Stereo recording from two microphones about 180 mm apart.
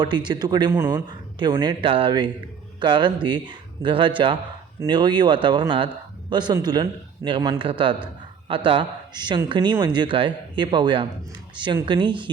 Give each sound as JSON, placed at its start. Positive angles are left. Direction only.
{"t": 0.3, "sound": "speech", "side_deg": -25}